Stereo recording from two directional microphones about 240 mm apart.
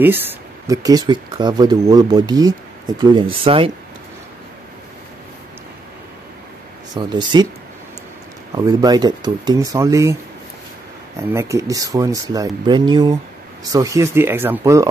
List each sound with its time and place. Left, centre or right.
0.0 s speech: centre
7.0 s speech: centre
8.5 s speech: centre
11.1 s speech: centre